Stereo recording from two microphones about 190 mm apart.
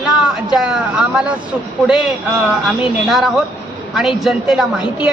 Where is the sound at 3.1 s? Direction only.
Centre (ahead or behind).